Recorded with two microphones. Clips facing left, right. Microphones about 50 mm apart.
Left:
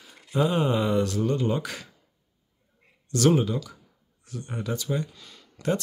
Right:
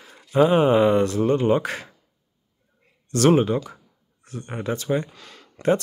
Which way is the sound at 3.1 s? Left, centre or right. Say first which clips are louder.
Right 4 dB; right.